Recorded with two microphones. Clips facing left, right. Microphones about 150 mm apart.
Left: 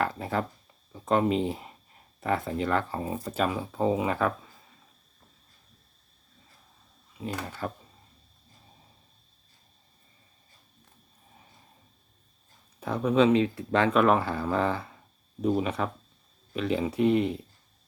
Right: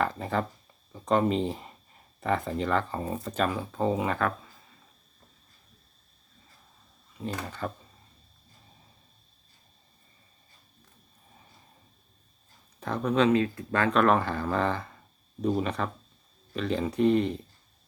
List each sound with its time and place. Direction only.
0.0 s speech: 5° left (ahead or behind)
7.2 s speech: 5° left (ahead or behind)
12.8 s speech: 5° left (ahead or behind)
13.3 s speech: 15° left (ahead or behind)
13.9 s speech: 5° left (ahead or behind)